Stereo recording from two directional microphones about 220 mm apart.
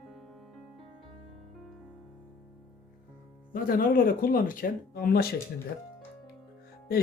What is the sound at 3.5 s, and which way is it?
Speech, 40° left (ahead or behind).